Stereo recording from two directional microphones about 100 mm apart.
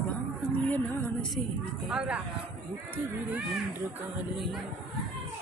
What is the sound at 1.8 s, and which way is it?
Speech, 10° right (ahead or behind).